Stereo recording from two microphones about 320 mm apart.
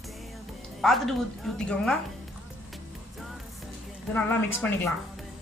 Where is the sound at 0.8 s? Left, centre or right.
Centre.